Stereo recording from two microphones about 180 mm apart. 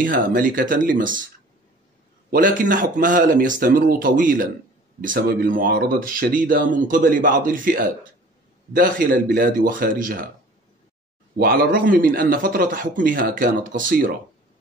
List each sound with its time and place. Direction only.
0.0 s speech: 50° right (ahead or behind)
2.3 s speech: 50° right (ahead or behind)
11.3 s speech: 60° right (ahead or behind)